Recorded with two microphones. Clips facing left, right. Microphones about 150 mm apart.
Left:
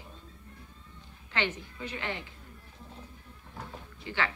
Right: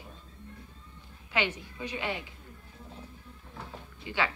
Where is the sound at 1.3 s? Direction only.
10° right (ahead or behind).